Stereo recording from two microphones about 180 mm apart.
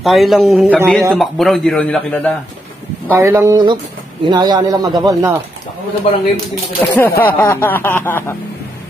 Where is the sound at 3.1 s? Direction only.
15° right (ahead or behind).